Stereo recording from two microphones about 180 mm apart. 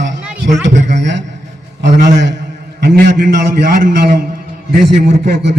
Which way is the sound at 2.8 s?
55° right (ahead or behind).